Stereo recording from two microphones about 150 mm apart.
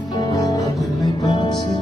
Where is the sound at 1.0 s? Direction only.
30° left (ahead or behind).